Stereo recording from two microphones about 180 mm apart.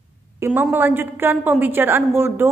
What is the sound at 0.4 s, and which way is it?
A woman's voice, 10° right (ahead or behind).